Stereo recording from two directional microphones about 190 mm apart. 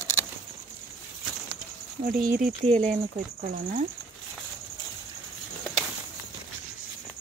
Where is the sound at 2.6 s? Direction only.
35° right (ahead or behind).